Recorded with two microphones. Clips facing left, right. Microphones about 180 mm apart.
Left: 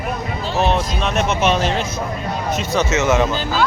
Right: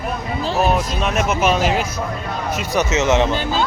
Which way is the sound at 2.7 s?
20° right (ahead or behind).